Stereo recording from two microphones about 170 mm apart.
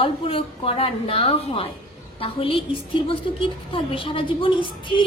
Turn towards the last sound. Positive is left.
turn(degrees=30)  # may be behind; listen again after turning